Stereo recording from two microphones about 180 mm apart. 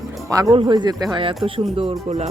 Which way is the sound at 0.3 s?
20° right (ahead or behind).